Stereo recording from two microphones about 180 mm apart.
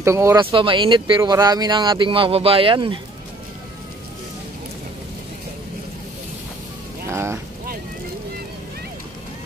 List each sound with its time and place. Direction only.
0.0 s speech: 15° right (ahead or behind)
0.5 s speech: 30° right (ahead or behind)
7.1 s boat: 15° right (ahead or behind)